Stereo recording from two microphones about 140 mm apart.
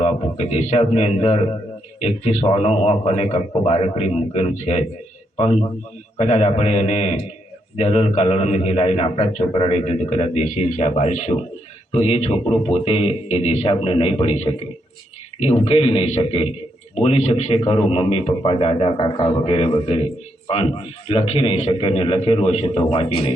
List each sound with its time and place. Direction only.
0.0 s a man's voice: 50° left (ahead or behind)
11.9 s a man's voice: 45° left (ahead or behind)
19.0 s a man's voice: 35° left (ahead or behind)